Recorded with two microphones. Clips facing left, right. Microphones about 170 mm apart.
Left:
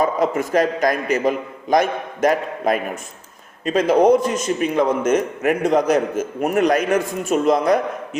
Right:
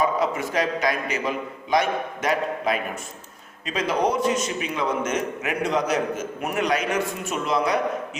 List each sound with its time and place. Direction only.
0.0 s a man's voice: 45° left (ahead or behind)